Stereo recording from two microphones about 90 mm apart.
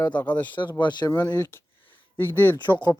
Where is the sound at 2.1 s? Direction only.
25° left (ahead or behind).